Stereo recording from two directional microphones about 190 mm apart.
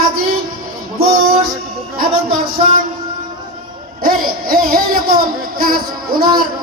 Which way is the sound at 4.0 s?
50° right (ahead or behind).